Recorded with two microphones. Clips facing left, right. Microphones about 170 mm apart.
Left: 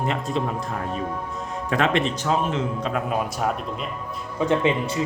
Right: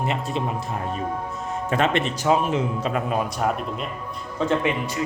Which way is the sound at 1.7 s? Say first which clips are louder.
Left 1 dB; centre (ahead or behind).